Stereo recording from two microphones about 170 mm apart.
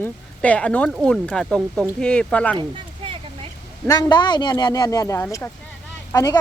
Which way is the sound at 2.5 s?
25° right (ahead or behind).